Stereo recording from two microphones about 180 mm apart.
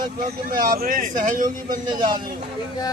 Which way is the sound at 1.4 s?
25° right (ahead or behind).